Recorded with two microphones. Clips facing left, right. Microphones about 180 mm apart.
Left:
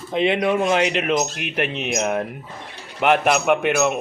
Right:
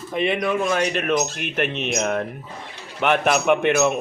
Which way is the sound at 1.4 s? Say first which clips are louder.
Even; 5° left (ahead or behind).